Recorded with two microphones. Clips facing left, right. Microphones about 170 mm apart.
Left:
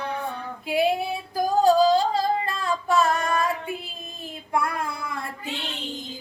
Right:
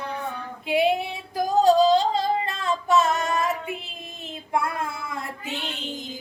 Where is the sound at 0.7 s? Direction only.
25° right (ahead or behind).